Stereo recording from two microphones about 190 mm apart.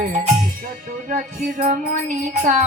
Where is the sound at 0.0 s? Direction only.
40° right (ahead or behind).